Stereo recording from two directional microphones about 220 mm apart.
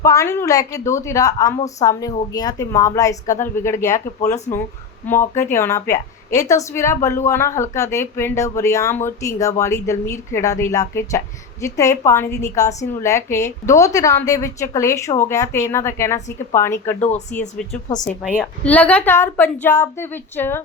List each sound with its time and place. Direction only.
0.0 s a woman's voice: 15° left (ahead or behind)
4.2 s speech: 30° left (ahead or behind)
5.1 s a woman's voice: 10° left (ahead or behind)
17.0 s speech: 30° left (ahead or behind)
18.0 s a woman's voice: centre (ahead or behind)